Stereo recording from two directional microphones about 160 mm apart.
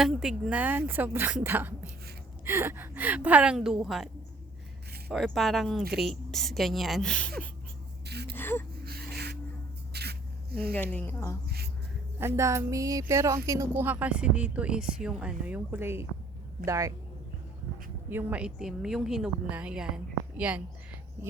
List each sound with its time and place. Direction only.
0.0 s speech: 5° right (ahead or behind)
5.1 s a woman's voice: centre (ahead or behind)
8.0 s gasp: 90° right
8.4 s speech: 15° left (ahead or behind)
8.8 s gasp: 75° right (ahead or behind); by 9.4 s 90° right
9.9 s spray: 90° right
10.5 s speech: 10° left (ahead or behind)
11.4 s a sound: 85° right
12.2 s speech: 15° right (ahead or behind)
18.1 s a woman's voice: 10° right (ahead or behind)